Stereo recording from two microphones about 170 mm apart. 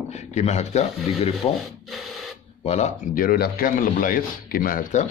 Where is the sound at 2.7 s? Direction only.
45° left (ahead or behind).